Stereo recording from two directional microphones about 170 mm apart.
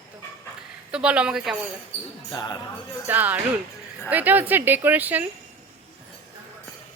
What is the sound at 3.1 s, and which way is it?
Speech, 10° right (ahead or behind).